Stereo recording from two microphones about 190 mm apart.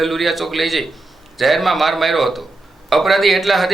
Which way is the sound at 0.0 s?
Centre (ahead or behind).